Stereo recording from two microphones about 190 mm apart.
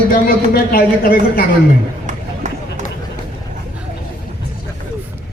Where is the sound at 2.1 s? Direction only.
40° right (ahead or behind).